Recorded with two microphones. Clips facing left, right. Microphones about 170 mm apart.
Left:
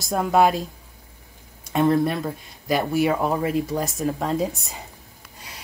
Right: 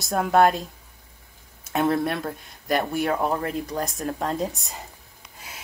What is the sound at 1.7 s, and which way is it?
Speech, centre (ahead or behind).